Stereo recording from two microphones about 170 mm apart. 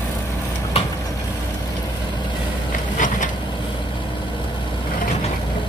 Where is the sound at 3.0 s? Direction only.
50° left (ahead or behind).